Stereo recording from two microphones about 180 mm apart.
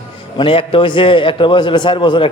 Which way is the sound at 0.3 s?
30° left (ahead or behind).